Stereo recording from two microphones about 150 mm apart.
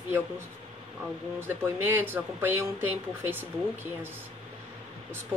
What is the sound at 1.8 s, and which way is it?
Speech, 15° right (ahead or behind).